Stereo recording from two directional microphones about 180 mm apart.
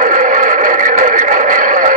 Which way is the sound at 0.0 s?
45° right (ahead or behind).